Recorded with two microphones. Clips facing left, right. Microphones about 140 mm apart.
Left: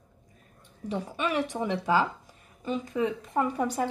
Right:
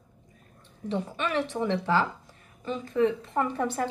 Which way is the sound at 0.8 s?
10° left (ahead or behind).